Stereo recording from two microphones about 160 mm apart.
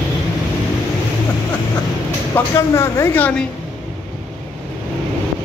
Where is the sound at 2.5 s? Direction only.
15° left (ahead or behind).